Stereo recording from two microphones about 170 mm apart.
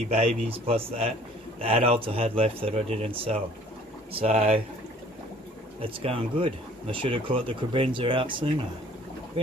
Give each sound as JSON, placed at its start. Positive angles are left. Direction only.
{"t": 0.1, "sound": "speech", "side_deg": -35}
{"t": 5.8, "sound": "speech", "side_deg": -30}